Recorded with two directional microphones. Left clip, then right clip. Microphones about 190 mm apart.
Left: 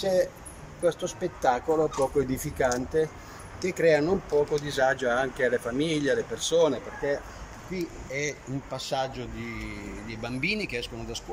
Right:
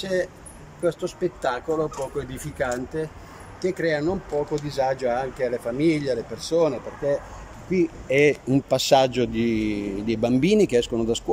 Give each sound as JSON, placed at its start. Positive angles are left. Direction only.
{"t": 0.0, "sound": "speech", "side_deg": 0}
{"t": 4.6, "sound": "speech", "side_deg": -10}
{"t": 7.7, "sound": "speech", "side_deg": -50}